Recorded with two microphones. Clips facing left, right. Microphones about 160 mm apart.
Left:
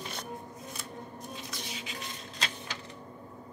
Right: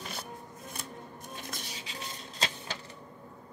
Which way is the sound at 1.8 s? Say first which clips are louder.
Left 1 dB; 30° right (ahead or behind).